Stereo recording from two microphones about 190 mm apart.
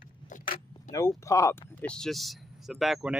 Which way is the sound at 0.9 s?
15° left (ahead or behind).